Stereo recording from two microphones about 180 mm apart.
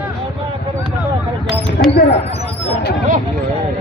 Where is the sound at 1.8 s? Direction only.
55° left (ahead or behind).